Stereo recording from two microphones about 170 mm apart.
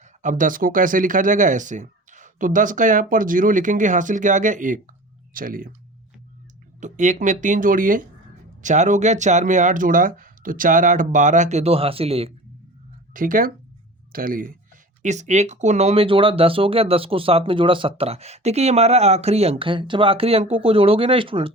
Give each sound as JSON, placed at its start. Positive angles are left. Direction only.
{"t": 0.0, "sound": "speech", "side_deg": -45}
{"t": 6.7, "sound": "speech", "side_deg": -45}
{"t": 13.1, "sound": "speech", "side_deg": -55}
{"t": 15.0, "sound": "speech", "side_deg": -45}